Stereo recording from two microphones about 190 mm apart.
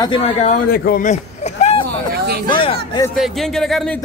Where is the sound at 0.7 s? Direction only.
50° left (ahead or behind).